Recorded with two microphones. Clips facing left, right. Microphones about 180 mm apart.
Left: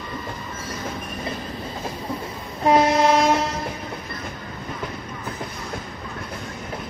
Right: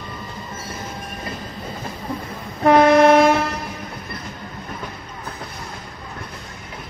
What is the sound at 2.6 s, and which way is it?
Train, 60° right (ahead or behind).